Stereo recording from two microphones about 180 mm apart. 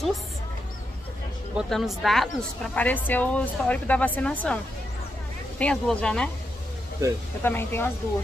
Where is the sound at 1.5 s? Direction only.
Centre (ahead or behind).